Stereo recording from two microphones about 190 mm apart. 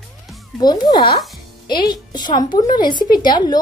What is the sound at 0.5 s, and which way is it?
A woman's voice, 20° left (ahead or behind).